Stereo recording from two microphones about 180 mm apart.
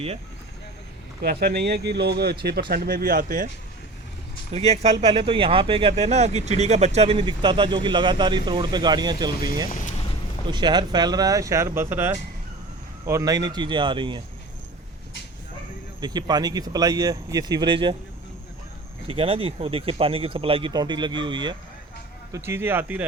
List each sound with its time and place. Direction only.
1.2 s speech: 60° right (ahead or behind)
4.5 s speech: 35° right (ahead or behind)
9.3 s speech: 55° left (ahead or behind)
10.4 s speech: 25° right (ahead or behind)
16.0 s speech: 25° right (ahead or behind)
19.0 s speech: 30° right (ahead or behind)
22.3 s speech: 15° right (ahead or behind)